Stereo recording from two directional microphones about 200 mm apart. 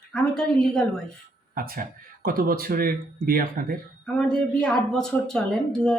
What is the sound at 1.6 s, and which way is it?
Speech, 45° right (ahead or behind).